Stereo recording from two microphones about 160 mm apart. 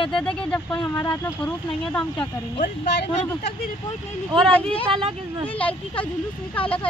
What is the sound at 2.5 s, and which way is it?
Speech, 90° left.